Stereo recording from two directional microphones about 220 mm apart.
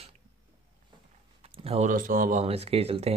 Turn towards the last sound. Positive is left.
turn(degrees=-25)  # may be behind; listen again after turning